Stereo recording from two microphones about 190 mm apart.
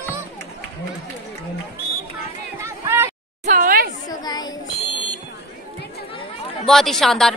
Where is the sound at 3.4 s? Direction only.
45° right (ahead or behind).